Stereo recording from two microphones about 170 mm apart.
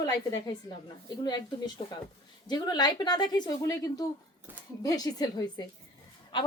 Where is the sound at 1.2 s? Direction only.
25° left (ahead or behind).